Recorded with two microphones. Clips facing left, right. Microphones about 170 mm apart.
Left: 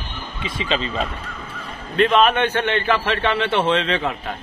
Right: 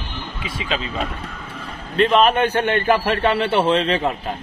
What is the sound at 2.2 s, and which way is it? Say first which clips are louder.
A man's voice: right 1 dB; 35° right (ahead or behind).